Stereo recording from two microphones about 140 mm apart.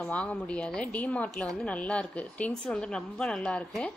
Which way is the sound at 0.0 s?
10° left (ahead or behind).